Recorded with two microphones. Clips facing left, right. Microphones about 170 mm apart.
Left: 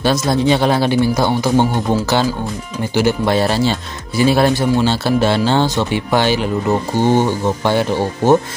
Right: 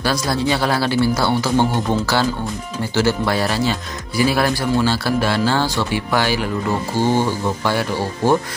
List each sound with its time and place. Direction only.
0.0 s speech: 20° left (ahead or behind)